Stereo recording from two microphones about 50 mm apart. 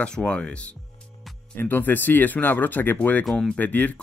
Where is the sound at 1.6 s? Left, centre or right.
Left.